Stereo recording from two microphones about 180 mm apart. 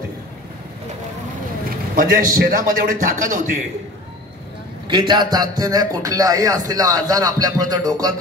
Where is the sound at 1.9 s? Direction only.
50° right (ahead or behind).